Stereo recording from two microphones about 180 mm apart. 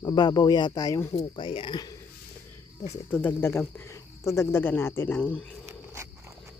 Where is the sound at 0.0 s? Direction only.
25° left (ahead or behind).